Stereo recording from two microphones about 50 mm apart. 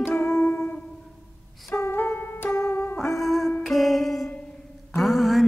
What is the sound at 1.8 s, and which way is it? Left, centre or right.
Music, left.